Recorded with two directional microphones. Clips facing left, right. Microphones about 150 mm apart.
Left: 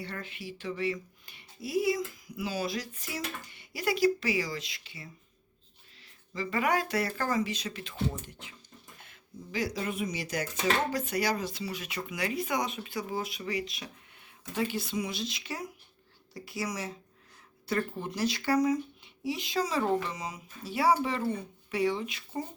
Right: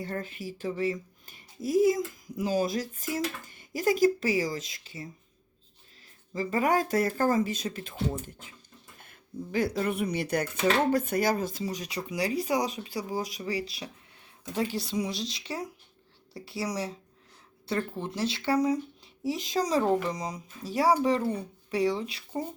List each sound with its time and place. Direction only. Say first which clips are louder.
0.0 s speech: right 5 dB; 45° right (ahead or behind)
6.3 s speech: right 3 dB; 40° right (ahead or behind)
9.0 s speech: right 10 dB; 50° right (ahead or behind); by 22.2 s 35° right (ahead or behind)